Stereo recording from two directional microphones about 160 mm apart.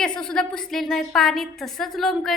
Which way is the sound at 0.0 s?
5° left (ahead or behind).